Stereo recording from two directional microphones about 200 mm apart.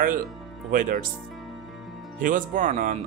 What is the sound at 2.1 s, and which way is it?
Speech, 40° right (ahead or behind).